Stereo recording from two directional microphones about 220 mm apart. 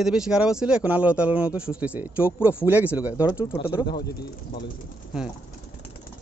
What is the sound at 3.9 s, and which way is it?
Speech, 45° left (ahead or behind).